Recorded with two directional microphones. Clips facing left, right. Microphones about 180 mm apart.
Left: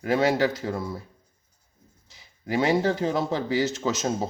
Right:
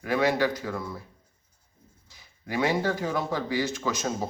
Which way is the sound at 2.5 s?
25° left (ahead or behind).